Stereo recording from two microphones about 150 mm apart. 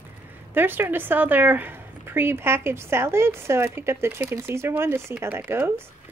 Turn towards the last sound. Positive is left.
turn(degrees=-15)  # may be behind; listen again after turning